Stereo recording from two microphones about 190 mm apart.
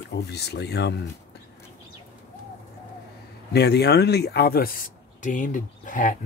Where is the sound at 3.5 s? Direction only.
60° left (ahead or behind).